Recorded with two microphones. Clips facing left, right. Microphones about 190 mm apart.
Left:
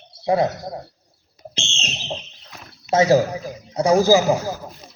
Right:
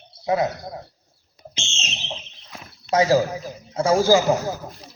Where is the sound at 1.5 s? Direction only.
35° left (ahead or behind).